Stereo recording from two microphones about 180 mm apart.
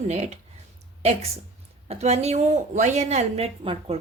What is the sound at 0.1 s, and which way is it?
Speech, 40° right (ahead or behind).